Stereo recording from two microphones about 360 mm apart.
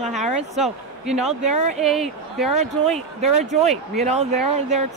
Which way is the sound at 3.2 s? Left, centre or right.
Centre.